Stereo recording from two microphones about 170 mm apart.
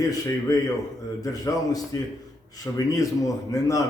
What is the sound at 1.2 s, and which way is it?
A man's voice, 20° left (ahead or behind).